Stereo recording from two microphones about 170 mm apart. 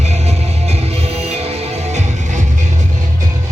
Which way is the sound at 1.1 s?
35° right (ahead or behind).